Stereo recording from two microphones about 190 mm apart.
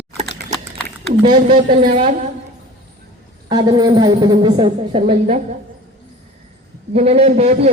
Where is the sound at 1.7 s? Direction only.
35° right (ahead or behind).